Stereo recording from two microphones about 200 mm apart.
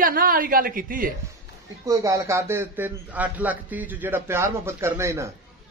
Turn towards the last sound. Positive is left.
turn(degrees=-15)  # may be behind; listen again after turning